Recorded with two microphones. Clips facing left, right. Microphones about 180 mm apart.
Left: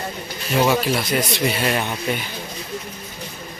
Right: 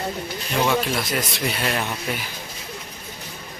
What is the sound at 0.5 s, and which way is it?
Speech, 5° left (ahead or behind).